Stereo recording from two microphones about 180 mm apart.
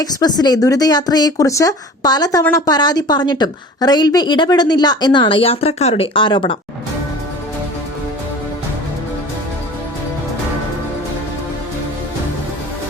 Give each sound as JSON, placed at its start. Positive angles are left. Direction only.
{"t": 0.0, "sound": "a woman's voice", "side_deg": 20}